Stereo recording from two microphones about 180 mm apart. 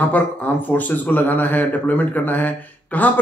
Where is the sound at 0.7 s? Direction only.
10° left (ahead or behind).